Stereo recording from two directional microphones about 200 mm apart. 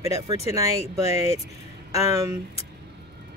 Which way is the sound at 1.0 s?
35° left (ahead or behind).